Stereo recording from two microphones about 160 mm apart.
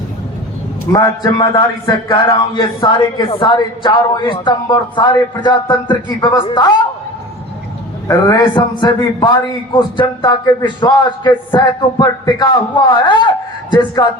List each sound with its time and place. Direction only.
0.9 s a man's voice: 25° left (ahead or behind)
8.0 s a man's voice: 25° left (ahead or behind)